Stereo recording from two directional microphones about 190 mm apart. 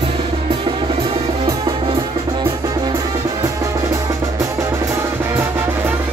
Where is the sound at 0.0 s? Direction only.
25° right (ahead or behind).